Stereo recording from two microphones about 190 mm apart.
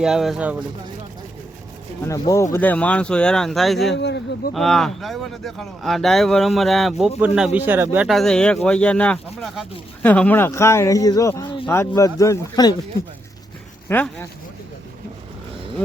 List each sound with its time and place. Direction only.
0.0 s speech: centre (ahead or behind)
2.0 s speech: 15° left (ahead or behind); by 3.9 s centre (ahead or behind)
3.9 s speech: 65° left (ahead or behind)
4.5 s speech: centre (ahead or behind); by 12.7 s 20° left (ahead or behind)
13.8 s speech: 10° left (ahead or behind)